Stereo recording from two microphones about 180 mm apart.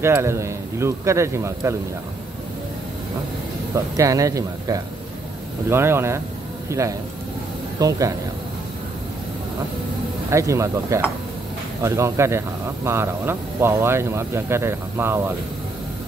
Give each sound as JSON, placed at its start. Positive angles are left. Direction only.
{"t": 0.0, "sound": "speech", "side_deg": -15}
{"t": 3.7, "sound": "speech", "side_deg": -20}
{"t": 10.3, "sound": "speech", "side_deg": -15}